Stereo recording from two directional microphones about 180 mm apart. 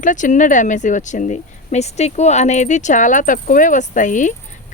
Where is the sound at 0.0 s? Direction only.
45° left (ahead or behind).